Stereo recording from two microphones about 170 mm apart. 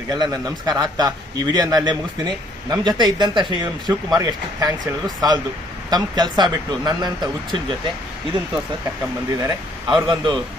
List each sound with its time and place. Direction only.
0.1 s a man's voice: 25° right (ahead or behind)
9.3 s a man's voice: 20° right (ahead or behind)